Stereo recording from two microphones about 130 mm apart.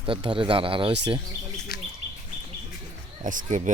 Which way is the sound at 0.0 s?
40° right (ahead or behind).